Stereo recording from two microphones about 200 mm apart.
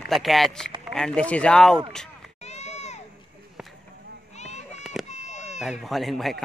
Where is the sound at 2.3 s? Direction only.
35° left (ahead or behind).